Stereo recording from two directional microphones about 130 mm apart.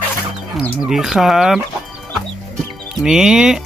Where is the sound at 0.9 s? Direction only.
5° right (ahead or behind).